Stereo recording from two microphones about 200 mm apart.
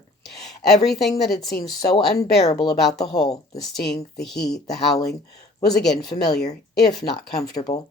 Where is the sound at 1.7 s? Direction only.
20° left (ahead or behind).